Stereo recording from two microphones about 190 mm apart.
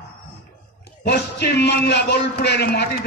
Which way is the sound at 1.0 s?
60° left (ahead or behind).